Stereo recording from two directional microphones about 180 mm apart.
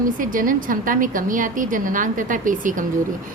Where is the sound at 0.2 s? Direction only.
50° right (ahead or behind).